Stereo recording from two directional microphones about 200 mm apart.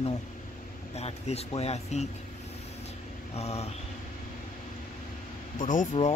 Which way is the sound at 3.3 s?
30° left (ahead or behind).